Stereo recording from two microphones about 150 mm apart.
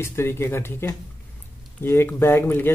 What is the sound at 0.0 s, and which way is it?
Speech, 15° left (ahead or behind).